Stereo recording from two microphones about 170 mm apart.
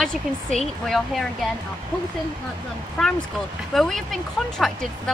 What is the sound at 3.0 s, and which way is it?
A woman's voice, centre (ahead or behind).